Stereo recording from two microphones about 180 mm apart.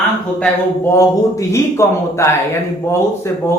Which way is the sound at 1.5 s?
15° left (ahead or behind).